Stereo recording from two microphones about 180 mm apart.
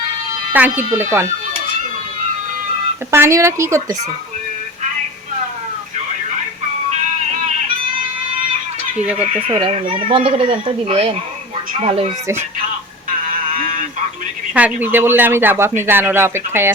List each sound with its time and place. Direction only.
0.5 s speech: 10° right (ahead or behind)
3.1 s speech: 15° right (ahead or behind)
9.5 s speech: 30° right (ahead or behind)
14.5 s speech: 10° right (ahead or behind)